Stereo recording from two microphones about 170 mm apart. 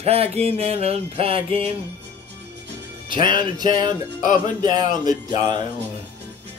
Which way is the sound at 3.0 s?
30° right (ahead or behind).